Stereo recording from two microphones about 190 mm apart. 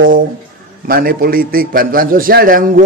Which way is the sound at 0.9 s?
50° right (ahead or behind).